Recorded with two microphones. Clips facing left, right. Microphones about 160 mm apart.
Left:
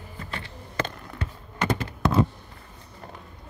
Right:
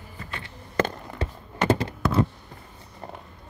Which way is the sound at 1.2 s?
30° right (ahead or behind).